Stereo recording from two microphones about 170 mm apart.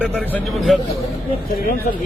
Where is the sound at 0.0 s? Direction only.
Centre (ahead or behind).